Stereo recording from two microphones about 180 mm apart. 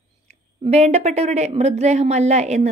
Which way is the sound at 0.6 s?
35° right (ahead or behind).